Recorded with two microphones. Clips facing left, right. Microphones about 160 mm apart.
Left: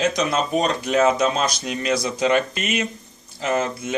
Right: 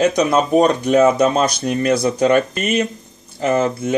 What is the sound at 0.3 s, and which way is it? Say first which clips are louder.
Speech: right 7 dB; 55° right (ahead or behind).